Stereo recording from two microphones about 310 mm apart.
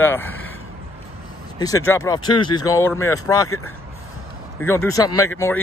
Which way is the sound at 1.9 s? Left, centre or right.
Centre.